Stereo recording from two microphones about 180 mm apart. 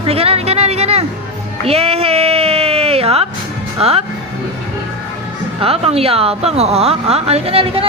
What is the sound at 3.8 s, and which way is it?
Speech, 35° right (ahead or behind).